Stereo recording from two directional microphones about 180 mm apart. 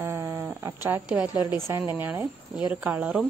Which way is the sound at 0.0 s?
15° right (ahead or behind).